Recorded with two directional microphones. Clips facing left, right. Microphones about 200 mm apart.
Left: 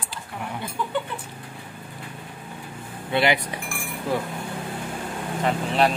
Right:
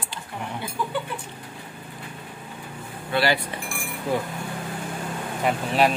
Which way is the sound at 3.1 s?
20° left (ahead or behind).